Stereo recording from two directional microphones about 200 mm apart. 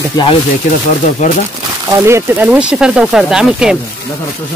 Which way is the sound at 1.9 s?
15° right (ahead or behind).